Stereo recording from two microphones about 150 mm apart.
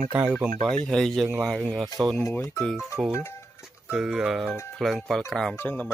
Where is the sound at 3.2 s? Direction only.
20° left (ahead or behind).